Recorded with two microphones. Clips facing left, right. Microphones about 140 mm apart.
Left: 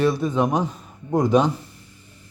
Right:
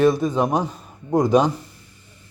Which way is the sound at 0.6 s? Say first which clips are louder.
Left 1 dB; 10° right (ahead or behind).